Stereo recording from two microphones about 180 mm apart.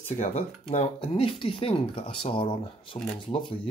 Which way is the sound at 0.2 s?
35° left (ahead or behind).